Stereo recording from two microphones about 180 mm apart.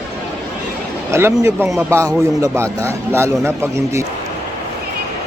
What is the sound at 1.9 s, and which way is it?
A man's voice, 15° right (ahead or behind).